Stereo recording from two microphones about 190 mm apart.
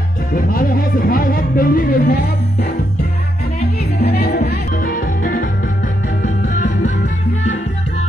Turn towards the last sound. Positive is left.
turn(degrees=40)  # may be behind; listen again after turning